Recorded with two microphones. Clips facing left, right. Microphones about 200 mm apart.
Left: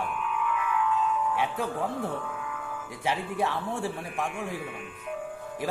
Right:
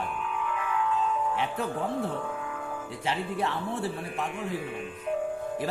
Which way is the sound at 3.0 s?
10° left (ahead or behind).